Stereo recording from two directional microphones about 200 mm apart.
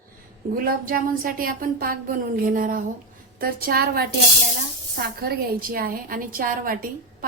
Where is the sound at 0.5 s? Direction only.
45° right (ahead or behind).